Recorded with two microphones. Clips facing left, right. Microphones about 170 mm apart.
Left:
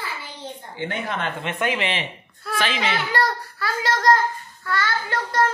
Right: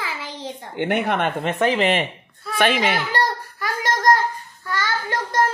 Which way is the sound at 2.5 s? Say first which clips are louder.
Right 5 dB; 55° right (ahead or behind).